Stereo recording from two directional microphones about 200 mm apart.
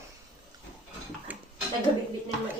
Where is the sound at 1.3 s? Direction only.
10° right (ahead or behind).